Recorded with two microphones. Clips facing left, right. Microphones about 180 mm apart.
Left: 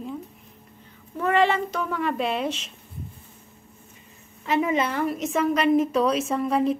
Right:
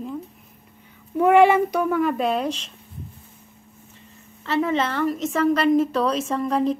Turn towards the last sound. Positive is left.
turn(degrees=5)  # may be behind; listen again after turning